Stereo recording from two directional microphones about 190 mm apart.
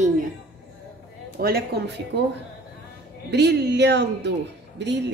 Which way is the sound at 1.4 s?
55° right (ahead or behind).